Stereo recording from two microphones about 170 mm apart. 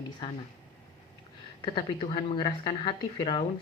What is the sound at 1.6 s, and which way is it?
Speech, 30° left (ahead or behind).